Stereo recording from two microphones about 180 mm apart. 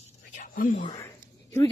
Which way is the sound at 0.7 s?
30° left (ahead or behind).